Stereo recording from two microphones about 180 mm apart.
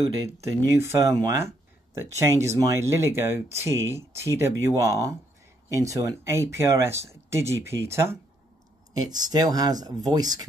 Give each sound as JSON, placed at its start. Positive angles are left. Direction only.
{"t": 0.5, "sound": "speech", "side_deg": -15}